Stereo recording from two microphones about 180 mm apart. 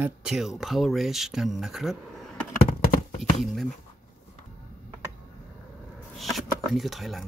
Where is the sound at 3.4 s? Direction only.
Centre (ahead or behind).